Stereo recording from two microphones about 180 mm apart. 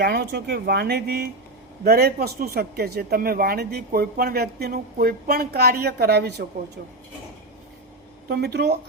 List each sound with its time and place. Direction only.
0.0 s a man's voice: 65° right (ahead or behind)
8.3 s a man's voice: 65° right (ahead or behind)